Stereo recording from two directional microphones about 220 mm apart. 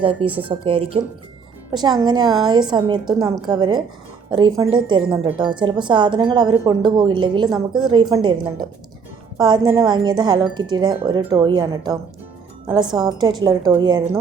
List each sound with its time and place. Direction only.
0.0 s a woman's voice: 25° right (ahead or behind)